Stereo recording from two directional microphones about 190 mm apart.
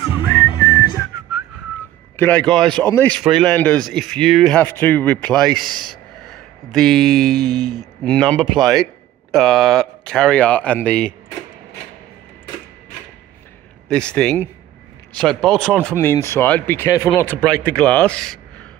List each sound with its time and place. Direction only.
0.5 s whistling: 15° left (ahead or behind)
2.1 s speech: 10° left (ahead or behind)
5.7 s speech: 25° right (ahead or behind)
6.2 s speech: centre (ahead or behind)
13.8 s speech: 5° left (ahead or behind)